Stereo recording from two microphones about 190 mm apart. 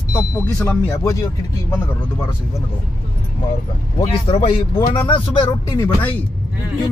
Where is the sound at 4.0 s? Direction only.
30° left (ahead or behind).